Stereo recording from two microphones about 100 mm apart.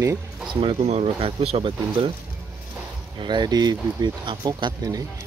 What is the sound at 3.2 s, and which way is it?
Speech, 50° right (ahead or behind).